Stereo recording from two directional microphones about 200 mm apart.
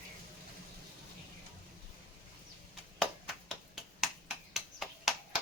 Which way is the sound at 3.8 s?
Centre (ahead or behind).